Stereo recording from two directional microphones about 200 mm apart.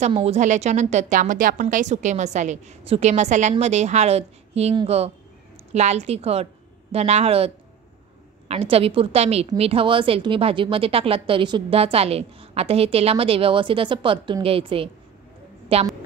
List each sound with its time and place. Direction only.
0.0 s a woman's voice: 30° right (ahead or behind)